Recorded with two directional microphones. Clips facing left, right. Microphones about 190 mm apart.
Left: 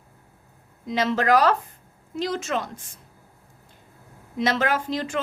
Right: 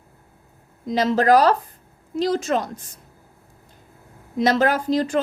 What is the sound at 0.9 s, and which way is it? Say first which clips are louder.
A woman's voice: right 4 dB; 40° right (ahead or behind).